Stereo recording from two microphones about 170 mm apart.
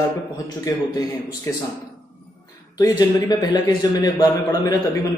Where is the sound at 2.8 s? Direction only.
25° left (ahead or behind).